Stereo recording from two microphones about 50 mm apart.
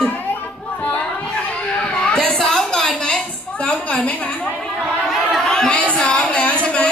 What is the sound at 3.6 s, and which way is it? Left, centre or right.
Speech, left.